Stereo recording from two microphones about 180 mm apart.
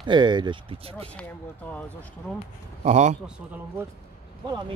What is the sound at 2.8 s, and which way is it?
Speech, 40° right (ahead or behind).